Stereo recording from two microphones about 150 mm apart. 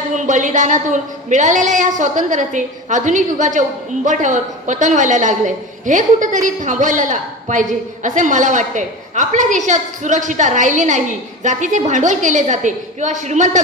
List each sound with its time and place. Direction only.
0.1 s a woman's voice: 55° right (ahead or behind)